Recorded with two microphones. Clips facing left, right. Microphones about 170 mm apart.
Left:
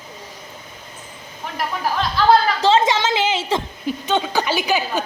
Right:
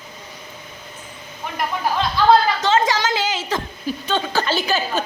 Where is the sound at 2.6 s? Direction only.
25° left (ahead or behind).